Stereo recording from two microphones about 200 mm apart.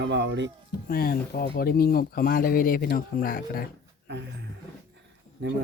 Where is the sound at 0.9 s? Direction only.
50° left (ahead or behind).